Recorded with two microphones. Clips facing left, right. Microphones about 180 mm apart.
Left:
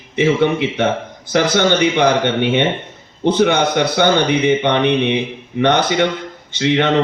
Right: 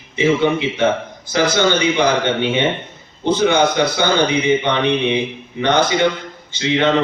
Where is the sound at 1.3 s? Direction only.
60° left (ahead or behind).